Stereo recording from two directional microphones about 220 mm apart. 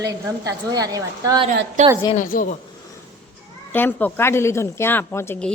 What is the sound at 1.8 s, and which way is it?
Speech, 35° right (ahead or behind).